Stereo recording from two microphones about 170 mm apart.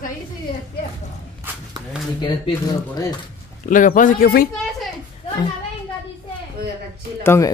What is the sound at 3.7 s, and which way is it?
Speech, 50° left (ahead or behind).